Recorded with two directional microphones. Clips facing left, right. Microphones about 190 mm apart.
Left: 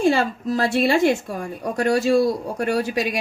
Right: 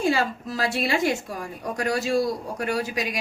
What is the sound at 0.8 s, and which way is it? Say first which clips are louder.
A woman's voice: left 6 dB; 30° left (ahead or behind).